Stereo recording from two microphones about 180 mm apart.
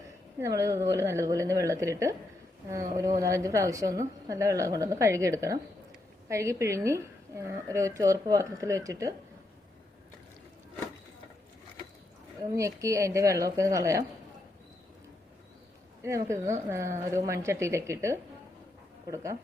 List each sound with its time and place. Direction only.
0.3 s a woman's voice: 15° right (ahead or behind)
12.4 s a woman's voice: 15° right (ahead or behind)
16.0 s a woman's voice: 15° right (ahead or behind)